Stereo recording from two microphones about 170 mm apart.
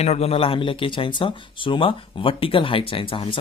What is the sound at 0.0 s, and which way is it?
Speech, 40° left (ahead or behind).